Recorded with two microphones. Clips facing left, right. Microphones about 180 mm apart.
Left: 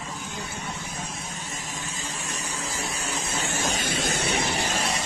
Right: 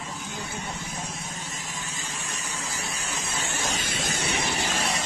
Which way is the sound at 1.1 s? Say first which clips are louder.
Even; 45° right (ahead or behind).